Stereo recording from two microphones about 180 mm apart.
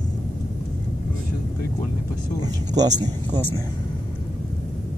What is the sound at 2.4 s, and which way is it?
Speech, 20° right (ahead or behind).